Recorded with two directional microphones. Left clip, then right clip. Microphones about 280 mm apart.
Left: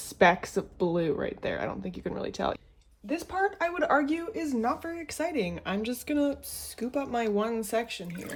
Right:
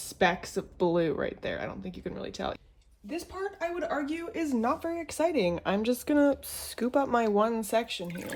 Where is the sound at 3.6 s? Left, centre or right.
Centre.